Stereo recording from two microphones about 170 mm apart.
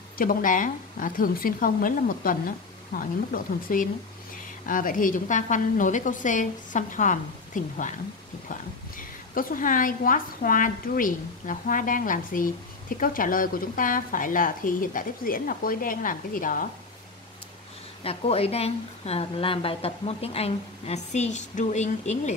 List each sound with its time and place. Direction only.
0.2 s a woman's voice: 55° left (ahead or behind)
18.0 s a woman's voice: 35° left (ahead or behind)